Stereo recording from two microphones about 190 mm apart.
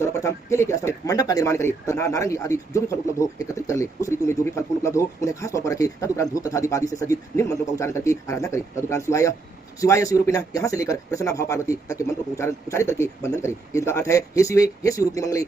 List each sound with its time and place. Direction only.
0.0 s speech: 15° left (ahead or behind)